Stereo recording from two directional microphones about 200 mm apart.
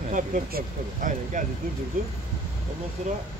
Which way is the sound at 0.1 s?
40° right (ahead or behind).